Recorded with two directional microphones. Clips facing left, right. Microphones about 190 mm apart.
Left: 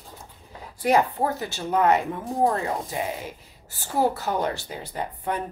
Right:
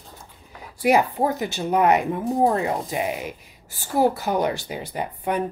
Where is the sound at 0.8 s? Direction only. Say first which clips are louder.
Right 2 dB; 10° right (ahead or behind).